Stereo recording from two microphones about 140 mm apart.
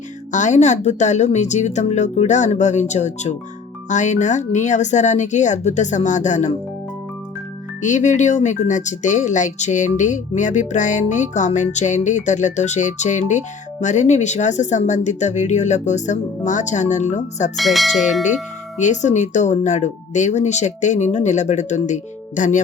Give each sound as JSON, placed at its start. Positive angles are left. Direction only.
{"t": 0.3, "sound": "speech", "side_deg": 60}
{"t": 7.8, "sound": "speech", "side_deg": 60}
{"t": 17.6, "sound": "speech", "side_deg": 0}
{"t": 18.8, "sound": "speech", "side_deg": 60}